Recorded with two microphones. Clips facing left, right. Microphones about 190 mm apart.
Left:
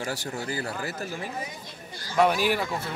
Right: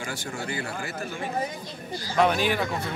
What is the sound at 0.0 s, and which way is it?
A man's voice, 35° left (ahead or behind).